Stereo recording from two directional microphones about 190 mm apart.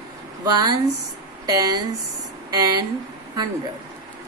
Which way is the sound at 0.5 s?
20° right (ahead or behind).